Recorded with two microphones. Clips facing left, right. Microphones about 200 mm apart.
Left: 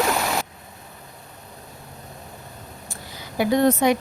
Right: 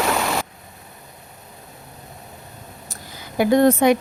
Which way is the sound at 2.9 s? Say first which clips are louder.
Right 3 dB; 50° right (ahead or behind).